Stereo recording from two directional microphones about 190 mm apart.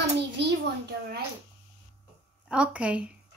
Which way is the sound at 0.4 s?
65° right (ahead or behind).